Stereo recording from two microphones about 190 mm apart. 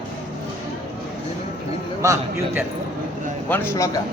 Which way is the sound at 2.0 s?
15° right (ahead or behind).